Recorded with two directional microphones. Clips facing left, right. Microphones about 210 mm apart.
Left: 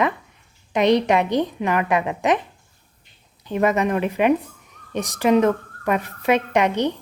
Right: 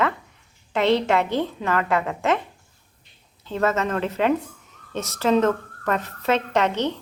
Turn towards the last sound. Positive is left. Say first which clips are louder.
# left 2 dB
turn(degrees=15)  # may be behind; listen again after turning